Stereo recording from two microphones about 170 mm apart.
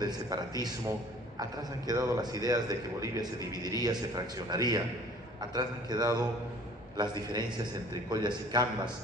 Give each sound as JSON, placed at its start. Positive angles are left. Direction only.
{"t": 0.0, "sound": "a man's voice", "side_deg": -25}